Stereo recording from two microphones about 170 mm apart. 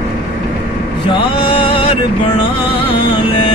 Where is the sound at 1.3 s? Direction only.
30° left (ahead or behind).